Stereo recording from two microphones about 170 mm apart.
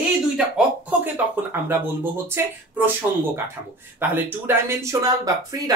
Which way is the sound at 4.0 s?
15° right (ahead or behind).